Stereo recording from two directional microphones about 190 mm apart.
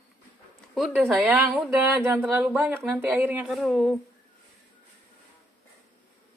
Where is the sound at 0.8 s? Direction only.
Centre (ahead or behind).